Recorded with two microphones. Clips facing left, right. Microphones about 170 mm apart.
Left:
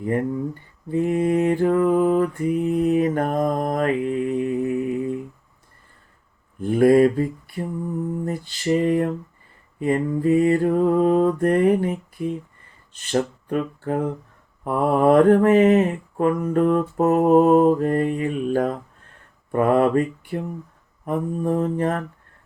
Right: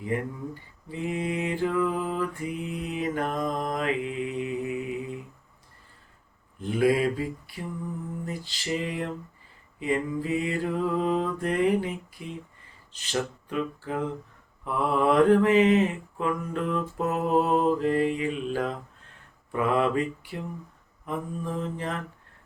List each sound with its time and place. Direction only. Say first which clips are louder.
0.0 s mantra: left 8 dB; 50° left (ahead or behind)
6.6 s mantra: left 9 dB; 50° left (ahead or behind)